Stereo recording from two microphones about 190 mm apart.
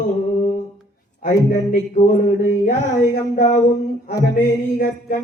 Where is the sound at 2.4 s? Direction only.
40° left (ahead or behind).